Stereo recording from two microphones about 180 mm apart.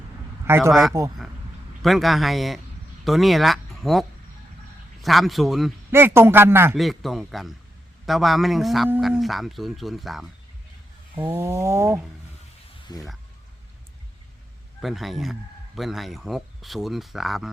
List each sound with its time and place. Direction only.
0.4 s a man's voice: 15° right (ahead or behind)
0.7 s speech: centre (ahead or behind)
5.0 s speech: centre (ahead or behind)
5.9 s a man's voice: 15° right (ahead or behind)
6.7 s speech: centre (ahead or behind)
11.2 s a man's voice: 15° right (ahead or behind)
12.9 s speech: 20° left (ahead or behind)
14.8 s speech: centre (ahead or behind)